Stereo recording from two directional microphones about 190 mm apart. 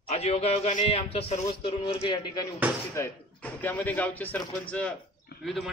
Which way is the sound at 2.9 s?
10° left (ahead or behind).